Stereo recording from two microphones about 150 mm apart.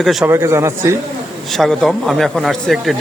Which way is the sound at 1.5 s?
5° left (ahead or behind).